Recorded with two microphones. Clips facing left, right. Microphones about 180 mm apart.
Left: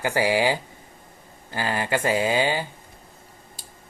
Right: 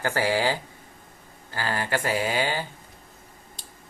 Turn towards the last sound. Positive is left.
turn(degrees=5)  # may be behind; listen again after turning